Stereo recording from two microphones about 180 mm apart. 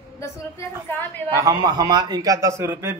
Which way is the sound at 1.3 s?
20° right (ahead or behind).